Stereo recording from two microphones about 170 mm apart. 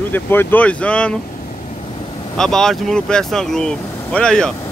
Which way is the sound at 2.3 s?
5° left (ahead or behind).